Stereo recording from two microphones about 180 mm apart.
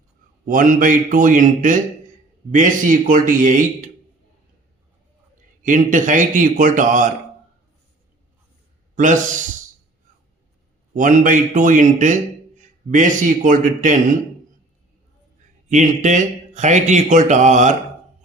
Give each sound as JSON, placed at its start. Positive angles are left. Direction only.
{"t": 0.4, "sound": "a man's voice", "side_deg": -50}
{"t": 5.6, "sound": "a man's voice", "side_deg": -45}
{"t": 9.0, "sound": "a man's voice", "side_deg": -45}
{"t": 10.9, "sound": "a man's voice", "side_deg": -45}
{"t": 15.7, "sound": "a man's voice", "side_deg": -45}